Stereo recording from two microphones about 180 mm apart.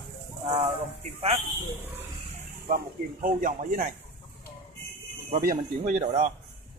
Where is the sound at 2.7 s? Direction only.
50° right (ahead or behind).